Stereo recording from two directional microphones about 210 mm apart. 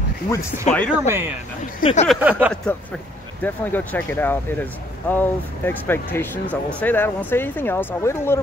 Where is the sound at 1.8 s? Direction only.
30° left (ahead or behind).